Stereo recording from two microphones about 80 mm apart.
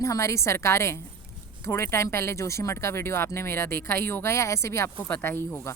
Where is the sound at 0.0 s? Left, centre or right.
Left.